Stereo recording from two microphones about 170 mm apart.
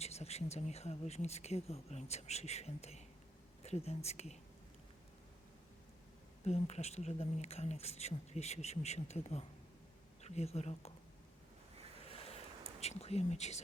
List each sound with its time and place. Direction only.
0.0 s a woman's voice: 40° left (ahead or behind)
6.4 s a woman's voice: 40° left (ahead or behind)
12.0 s a sound: 35° left (ahead or behind)
12.8 s a woman's voice: 40° left (ahead or behind)